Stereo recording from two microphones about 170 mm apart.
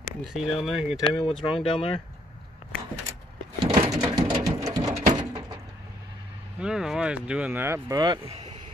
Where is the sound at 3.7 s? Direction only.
20° right (ahead or behind).